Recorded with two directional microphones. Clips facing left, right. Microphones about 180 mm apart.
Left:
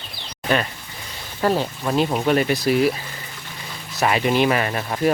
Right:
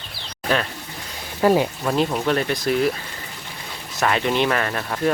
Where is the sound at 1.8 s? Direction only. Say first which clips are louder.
Even; centre (ahead or behind).